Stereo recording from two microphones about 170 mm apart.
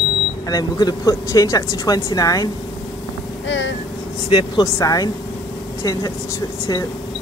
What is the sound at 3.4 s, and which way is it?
Speech, 90° left.